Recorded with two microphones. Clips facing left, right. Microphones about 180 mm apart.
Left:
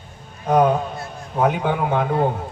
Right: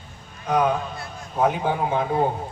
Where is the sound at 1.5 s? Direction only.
65° left (ahead or behind).